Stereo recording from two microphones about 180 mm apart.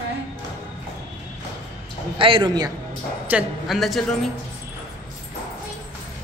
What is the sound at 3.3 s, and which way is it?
A woman's voice, centre (ahead or behind).